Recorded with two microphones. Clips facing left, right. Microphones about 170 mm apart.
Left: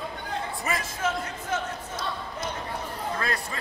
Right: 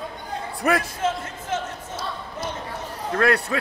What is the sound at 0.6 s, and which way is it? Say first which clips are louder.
Speech: right 11 dB; 65° right (ahead or behind).